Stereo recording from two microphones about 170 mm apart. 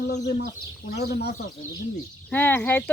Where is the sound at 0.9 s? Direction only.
70° left (ahead or behind).